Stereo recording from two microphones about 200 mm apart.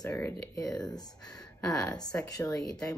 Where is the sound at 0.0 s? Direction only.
15° left (ahead or behind).